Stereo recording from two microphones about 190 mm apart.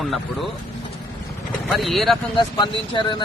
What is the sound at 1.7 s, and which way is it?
Speech, centre (ahead or behind).